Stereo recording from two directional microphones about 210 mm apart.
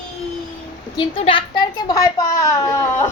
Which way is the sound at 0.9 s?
25° left (ahead or behind).